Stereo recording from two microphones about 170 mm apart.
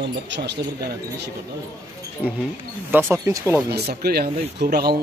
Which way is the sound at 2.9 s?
15° right (ahead or behind).